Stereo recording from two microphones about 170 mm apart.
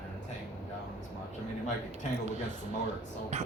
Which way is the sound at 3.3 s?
40° right (ahead or behind).